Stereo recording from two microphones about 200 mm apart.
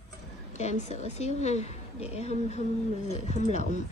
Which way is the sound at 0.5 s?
35° left (ahead or behind).